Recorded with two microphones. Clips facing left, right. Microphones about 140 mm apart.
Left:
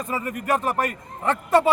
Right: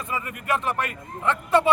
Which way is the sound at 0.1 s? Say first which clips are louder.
Left 3 dB; 40° left (ahead or behind).